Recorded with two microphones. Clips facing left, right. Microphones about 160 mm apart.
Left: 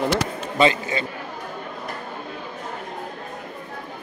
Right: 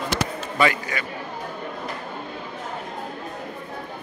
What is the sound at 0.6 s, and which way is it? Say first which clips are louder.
Speech: left 3 dB; 25° left (ahead or behind).